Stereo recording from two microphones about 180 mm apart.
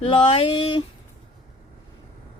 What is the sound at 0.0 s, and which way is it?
Speech, 30° left (ahead or behind).